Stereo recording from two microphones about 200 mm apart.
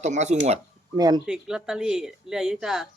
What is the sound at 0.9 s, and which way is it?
Speech, 20° right (ahead or behind).